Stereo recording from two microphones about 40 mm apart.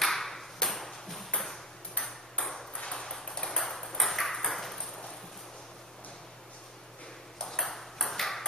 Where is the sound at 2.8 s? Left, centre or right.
Centre.